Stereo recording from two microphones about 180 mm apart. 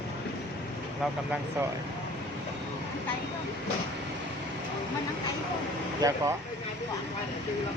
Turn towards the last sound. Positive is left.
turn(degrees=-15)  # may be behind; listen again after turning